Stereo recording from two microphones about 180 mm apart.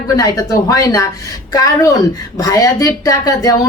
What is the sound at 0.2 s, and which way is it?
A woman's voice, 20° left (ahead or behind).